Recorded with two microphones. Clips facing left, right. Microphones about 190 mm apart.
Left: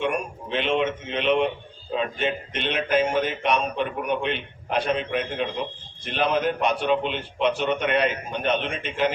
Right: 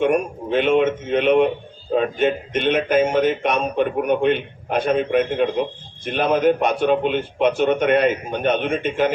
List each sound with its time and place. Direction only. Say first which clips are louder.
0.0 s speech: right 8 dB; 50° right (ahead or behind)